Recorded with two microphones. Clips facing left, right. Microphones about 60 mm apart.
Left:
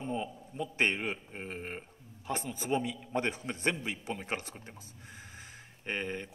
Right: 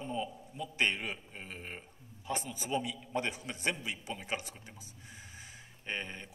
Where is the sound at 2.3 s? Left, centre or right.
Left.